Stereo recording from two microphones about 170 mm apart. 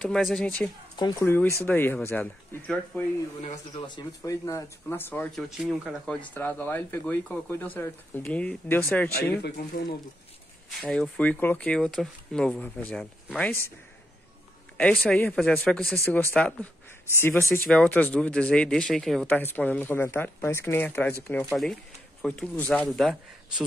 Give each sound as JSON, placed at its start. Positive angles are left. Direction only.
{"t": 0.0, "sound": "speech", "side_deg": 5}
{"t": 3.5, "sound": "speech", "side_deg": 25}
{"t": 5.6, "sound": "speech", "side_deg": 0}
{"t": 6.2, "sound": "speech", "side_deg": 10}
{"t": 9.4, "sound": "speech", "side_deg": 65}
{"t": 10.8, "sound": "speech", "side_deg": 5}
{"t": 14.8, "sound": "speech", "side_deg": 5}
{"t": 17.6, "sound": "speech", "side_deg": 5}